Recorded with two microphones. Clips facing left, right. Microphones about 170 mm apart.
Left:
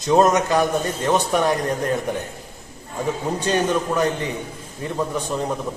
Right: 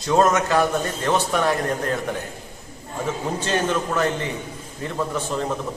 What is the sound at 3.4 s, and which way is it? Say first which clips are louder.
A man's voice: left 3 dB; 15° left (ahead or behind).